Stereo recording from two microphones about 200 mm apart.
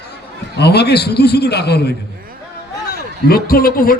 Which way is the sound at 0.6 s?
55° left (ahead or behind).